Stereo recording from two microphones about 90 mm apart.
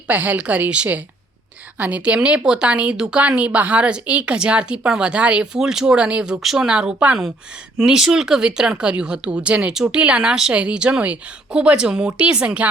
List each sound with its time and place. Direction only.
0.1 s speech: 15° right (ahead or behind)